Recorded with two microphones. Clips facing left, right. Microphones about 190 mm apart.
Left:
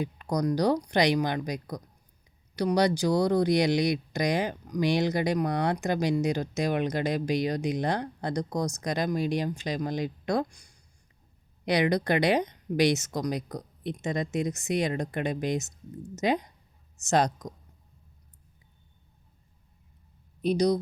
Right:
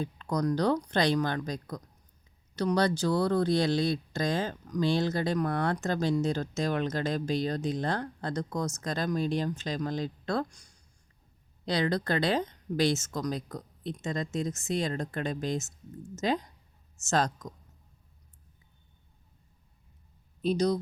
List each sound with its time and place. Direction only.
0.0 s speech: 15° left (ahead or behind)
20.4 s speech: 15° left (ahead or behind)